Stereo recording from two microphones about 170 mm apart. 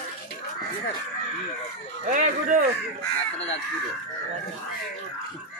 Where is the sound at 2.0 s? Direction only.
50° right (ahead or behind).